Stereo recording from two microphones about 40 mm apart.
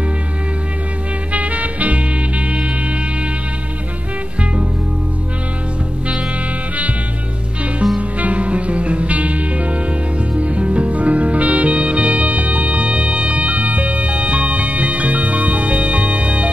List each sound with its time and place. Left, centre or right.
1.3 s music: right
7.8 s music: centre
8.2 s music: right